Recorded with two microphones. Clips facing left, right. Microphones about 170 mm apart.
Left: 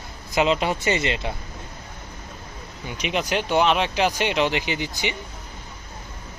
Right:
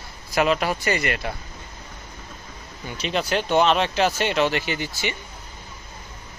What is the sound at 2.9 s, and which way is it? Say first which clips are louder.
Speech: even; 15° left (ahead or behind).